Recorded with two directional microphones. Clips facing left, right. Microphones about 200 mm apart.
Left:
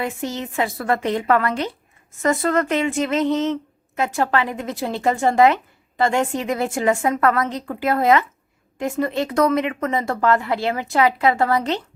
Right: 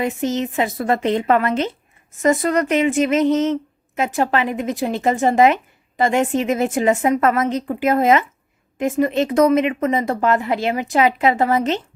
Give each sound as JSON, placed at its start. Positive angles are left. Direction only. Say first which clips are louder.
{"t": 0.0, "sound": "a woman's voice", "louder": "right 5 dB", "side_deg": -20}